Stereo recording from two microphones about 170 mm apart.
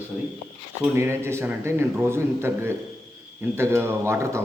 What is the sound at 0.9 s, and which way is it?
A man's voice, 15° right (ahead or behind).